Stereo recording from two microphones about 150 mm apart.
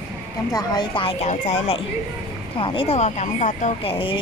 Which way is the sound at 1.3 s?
45° left (ahead or behind).